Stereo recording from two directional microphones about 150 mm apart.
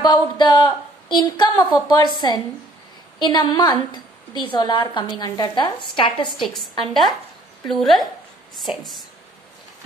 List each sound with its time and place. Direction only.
0.0 s a woman's voice: 30° left (ahead or behind)
6.3 s a woman's voice: centre (ahead or behind)